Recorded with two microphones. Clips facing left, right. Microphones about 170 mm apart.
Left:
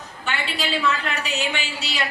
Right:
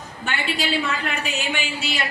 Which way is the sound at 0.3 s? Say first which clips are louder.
Right 2 dB; 50° right (ahead or behind).